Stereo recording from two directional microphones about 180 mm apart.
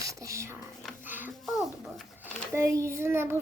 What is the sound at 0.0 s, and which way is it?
Speech, 15° right (ahead or behind).